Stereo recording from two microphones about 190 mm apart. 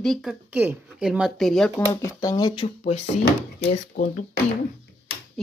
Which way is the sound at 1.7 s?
15° left (ahead or behind).